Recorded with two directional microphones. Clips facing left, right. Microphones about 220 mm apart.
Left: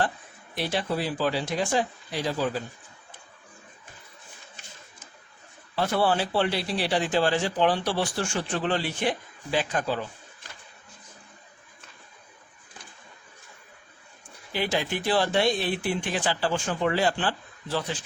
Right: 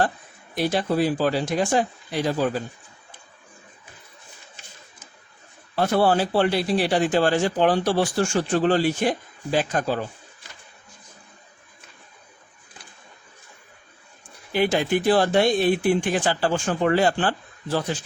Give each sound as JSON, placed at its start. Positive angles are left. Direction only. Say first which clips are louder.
{"t": 0.5, "sound": "speech", "louder": "right 6 dB", "side_deg": -45}
{"t": 5.7, "sound": "speech", "louder": "right 5 dB", "side_deg": -45}
{"t": 14.5, "sound": "speech", "louder": "right 7 dB", "side_deg": -50}